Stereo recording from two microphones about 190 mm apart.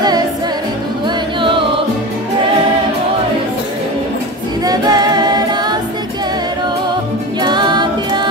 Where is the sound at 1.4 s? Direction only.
25° right (ahead or behind).